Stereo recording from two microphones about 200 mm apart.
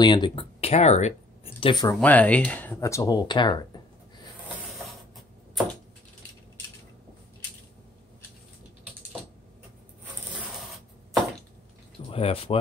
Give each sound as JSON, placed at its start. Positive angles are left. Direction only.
{"t": 0.0, "sound": "speech", "side_deg": 20}
{"t": 2.0, "sound": "speech", "side_deg": 10}
{"t": 12.1, "sound": "speech", "side_deg": 30}